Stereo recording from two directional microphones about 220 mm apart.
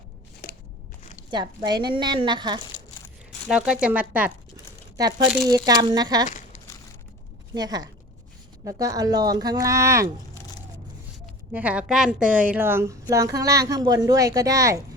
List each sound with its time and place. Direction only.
1.3 s a woman's voice: 20° right (ahead or behind)
3.5 s speech: 5° right (ahead or behind)
5.5 s a woman's voice: 15° right (ahead or behind)
7.5 s a woman's voice: 20° right (ahead or behind)
11.5 s a woman's voice: 5° right (ahead or behind)